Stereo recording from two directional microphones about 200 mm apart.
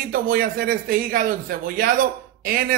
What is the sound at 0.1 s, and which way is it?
Speech, 45° right (ahead or behind).